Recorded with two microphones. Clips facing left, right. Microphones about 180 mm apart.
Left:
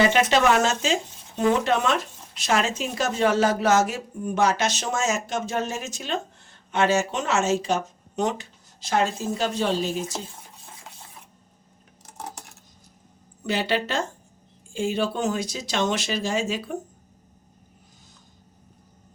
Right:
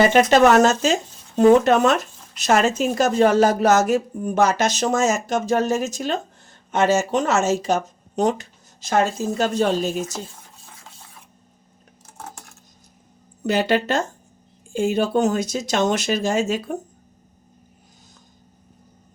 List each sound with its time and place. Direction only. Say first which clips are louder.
0.0 s a woman's voice: right 5 dB; 45° right (ahead or behind)
13.5 s a woman's voice: right 5 dB; 45° right (ahead or behind)